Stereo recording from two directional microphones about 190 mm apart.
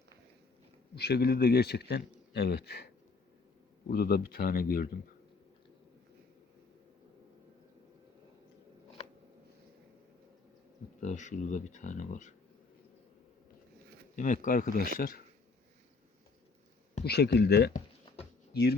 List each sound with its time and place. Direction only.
0.9 s speech: 60° left (ahead or behind)
11.0 s speech: 40° left (ahead or behind)
14.2 s speech: 45° left (ahead or behind)
17.0 s speech: 60° left (ahead or behind)